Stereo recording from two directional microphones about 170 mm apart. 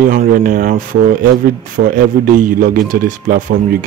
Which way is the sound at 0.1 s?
50° right (ahead or behind).